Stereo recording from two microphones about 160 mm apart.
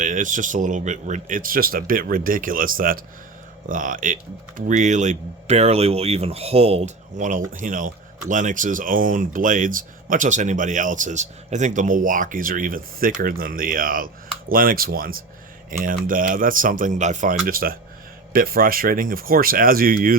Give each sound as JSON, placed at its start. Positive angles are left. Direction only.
{"t": 0.0, "sound": "speech", "side_deg": -55}